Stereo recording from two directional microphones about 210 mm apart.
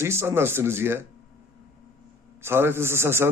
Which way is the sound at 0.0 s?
10° right (ahead or behind).